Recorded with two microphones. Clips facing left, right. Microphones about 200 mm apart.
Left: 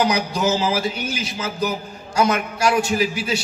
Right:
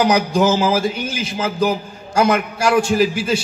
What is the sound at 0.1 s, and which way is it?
A man's voice, 50° right (ahead or behind).